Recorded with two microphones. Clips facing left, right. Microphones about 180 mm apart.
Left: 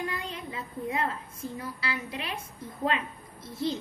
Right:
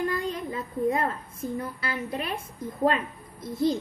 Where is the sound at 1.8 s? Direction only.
50° right (ahead or behind).